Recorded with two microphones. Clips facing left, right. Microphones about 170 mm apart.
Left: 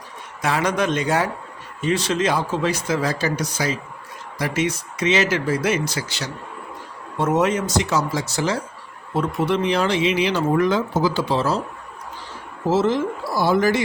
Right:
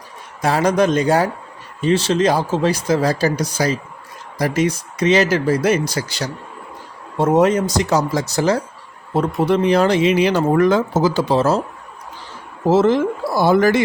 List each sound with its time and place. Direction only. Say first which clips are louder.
0.4 s speech: right 5 dB; 35° right (ahead or behind)
12.6 s speech: right 5 dB; 55° right (ahead or behind)